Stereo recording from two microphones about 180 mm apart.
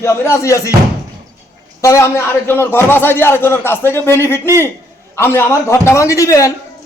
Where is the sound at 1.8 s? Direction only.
15° left (ahead or behind).